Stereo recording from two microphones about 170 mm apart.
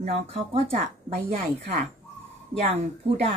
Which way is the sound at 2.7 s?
40° right (ahead or behind).